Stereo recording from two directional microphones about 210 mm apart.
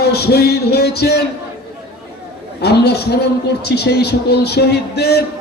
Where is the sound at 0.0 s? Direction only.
50° left (ahead or behind).